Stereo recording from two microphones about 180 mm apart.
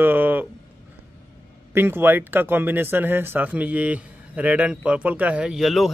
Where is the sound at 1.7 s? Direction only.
10° right (ahead or behind).